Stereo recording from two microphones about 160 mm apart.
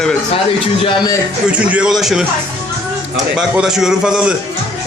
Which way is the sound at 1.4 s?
10° right (ahead or behind).